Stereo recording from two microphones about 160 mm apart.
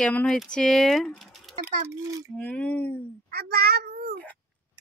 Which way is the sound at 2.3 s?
10° left (ahead or behind).